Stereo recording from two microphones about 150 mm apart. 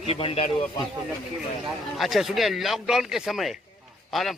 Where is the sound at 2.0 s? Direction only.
Centre (ahead or behind).